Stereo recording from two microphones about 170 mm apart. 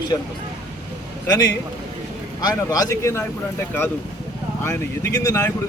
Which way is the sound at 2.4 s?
20° left (ahead or behind).